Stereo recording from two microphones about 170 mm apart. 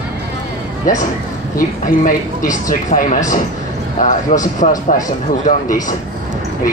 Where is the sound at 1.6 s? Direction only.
55° left (ahead or behind).